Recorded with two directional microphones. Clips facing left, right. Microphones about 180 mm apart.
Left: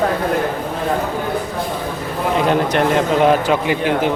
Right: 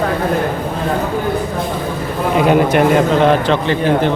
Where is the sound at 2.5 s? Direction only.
10° right (ahead or behind).